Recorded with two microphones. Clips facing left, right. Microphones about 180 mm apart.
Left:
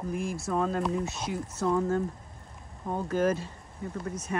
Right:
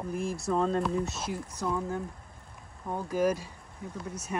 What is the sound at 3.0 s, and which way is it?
Speech, 10° right (ahead or behind).